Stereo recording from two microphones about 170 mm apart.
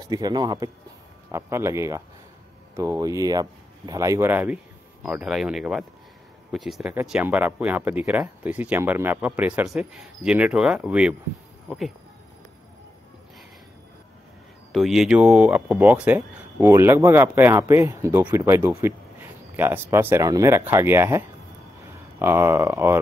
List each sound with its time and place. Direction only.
0.0 s speech: 20° right (ahead or behind); by 11.1 s 5° right (ahead or behind)
14.7 s speech: centre (ahead or behind)
22.2 s speech: 15° right (ahead or behind)